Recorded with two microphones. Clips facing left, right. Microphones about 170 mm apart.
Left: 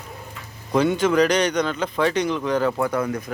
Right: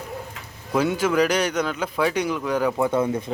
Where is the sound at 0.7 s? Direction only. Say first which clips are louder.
Left 2 dB; 5° right (ahead or behind).